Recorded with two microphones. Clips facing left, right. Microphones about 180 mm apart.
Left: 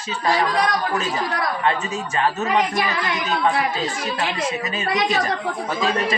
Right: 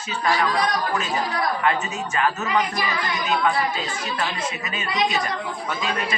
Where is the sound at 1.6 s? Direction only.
30° left (ahead or behind).